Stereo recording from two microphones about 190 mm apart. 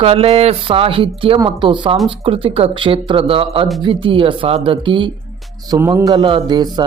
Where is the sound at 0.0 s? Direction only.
30° right (ahead or behind).